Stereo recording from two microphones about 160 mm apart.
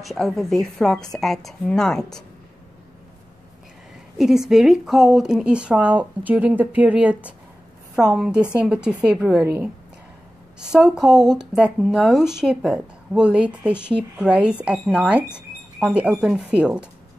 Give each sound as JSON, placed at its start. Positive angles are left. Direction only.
{"t": 0.0, "sound": "a woman's voice", "side_deg": 0}
{"t": 4.2, "sound": "speech", "side_deg": -5}
{"t": 10.6, "sound": "a woman's voice", "side_deg": -5}